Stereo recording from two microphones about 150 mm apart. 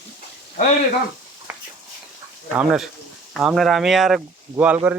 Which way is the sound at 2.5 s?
5° right (ahead or behind).